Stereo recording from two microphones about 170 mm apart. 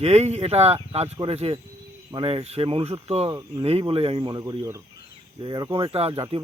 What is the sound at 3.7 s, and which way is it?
Speech, 35° right (ahead or behind).